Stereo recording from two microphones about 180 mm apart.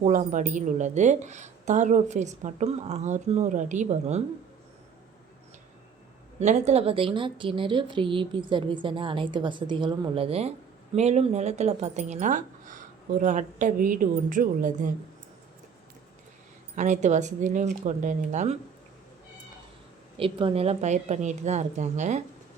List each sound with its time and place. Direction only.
0.0 s speech: 40° right (ahead or behind)
6.4 s speech: 40° right (ahead or behind)
16.7 s speech: 40° right (ahead or behind)
20.1 s speech: 30° right (ahead or behind)